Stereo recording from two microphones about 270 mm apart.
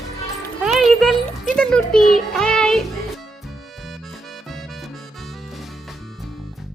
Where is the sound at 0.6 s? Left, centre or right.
Centre.